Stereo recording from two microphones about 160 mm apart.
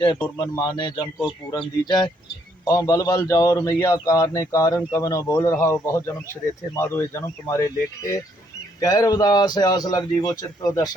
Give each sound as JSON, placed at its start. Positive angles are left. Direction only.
{"t": 0.3, "sound": "a man's voice", "side_deg": 30}